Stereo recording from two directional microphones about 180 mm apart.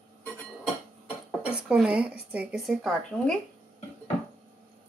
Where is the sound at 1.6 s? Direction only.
5° right (ahead or behind).